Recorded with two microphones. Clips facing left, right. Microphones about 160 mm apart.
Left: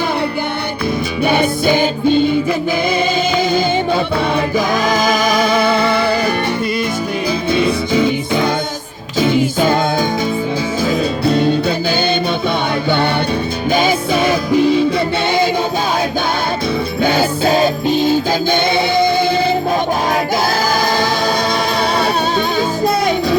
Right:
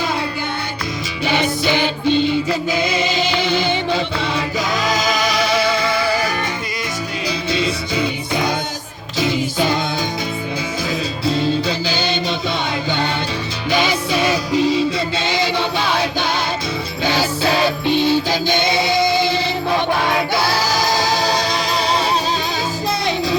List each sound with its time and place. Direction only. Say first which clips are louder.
1.2 s music: left 4 dB; 55° left (ahead or behind)
9.1 s music: left 5 dB; 50° left (ahead or behind)
11.3 s music: left 4 dB; 60° left (ahead or behind)
13.7 s music: left 3 dB; 50° left (ahead or behind)
17.0 s music: left 4 dB; 50° left (ahead or behind)
20.8 s music: left 2 dB; 55° left (ahead or behind)